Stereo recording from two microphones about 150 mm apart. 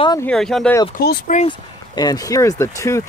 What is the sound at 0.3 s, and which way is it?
Speech, 5° left (ahead or behind).